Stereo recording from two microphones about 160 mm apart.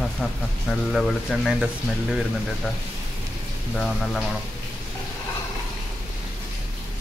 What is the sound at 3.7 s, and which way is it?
Speech, 5° left (ahead or behind).